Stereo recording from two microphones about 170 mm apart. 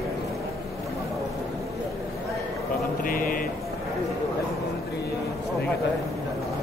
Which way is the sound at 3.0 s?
55° left (ahead or behind).